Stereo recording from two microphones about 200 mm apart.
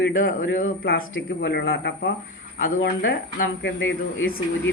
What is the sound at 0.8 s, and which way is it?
Speech, 50° left (ahead or behind).